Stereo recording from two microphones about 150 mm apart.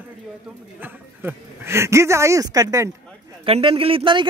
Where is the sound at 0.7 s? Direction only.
10° right (ahead or behind).